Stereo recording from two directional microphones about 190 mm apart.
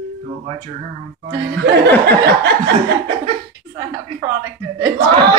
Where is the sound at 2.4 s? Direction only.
60° right (ahead or behind).